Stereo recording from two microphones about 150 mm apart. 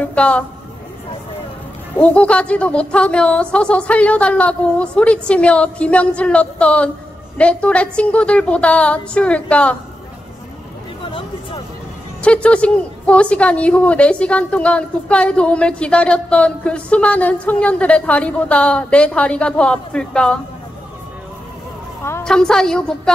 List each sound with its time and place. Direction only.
0.0 s a woman's voice: 10° left (ahead or behind)
2.0 s a woman's voice: 10° left (ahead or behind)
11.1 s a sound: 35° left (ahead or behind)
12.2 s a woman's voice: 10° left (ahead or behind)
22.2 s a woman's voice: 5° left (ahead or behind)